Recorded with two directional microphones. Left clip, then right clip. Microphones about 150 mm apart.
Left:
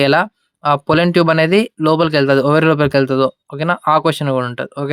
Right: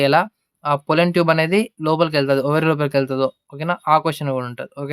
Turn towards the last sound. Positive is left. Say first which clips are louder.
# left 7 dB
turn(degrees=35)  # may be behind; listen again after turning